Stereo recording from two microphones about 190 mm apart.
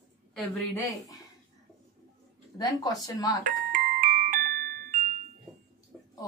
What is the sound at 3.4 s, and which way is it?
Music, 45° right (ahead or behind).